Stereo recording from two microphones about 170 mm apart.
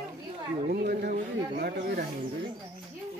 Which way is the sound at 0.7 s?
65° right (ahead or behind).